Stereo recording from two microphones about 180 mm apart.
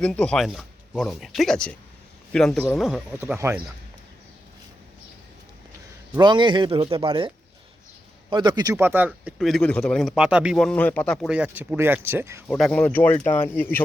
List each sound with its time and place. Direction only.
0.0 s speech: 5° left (ahead or behind)
3.2 s speech: 15° right (ahead or behind)
6.1 s speech: 25° right (ahead or behind)
12.5 s speech: centre (ahead or behind)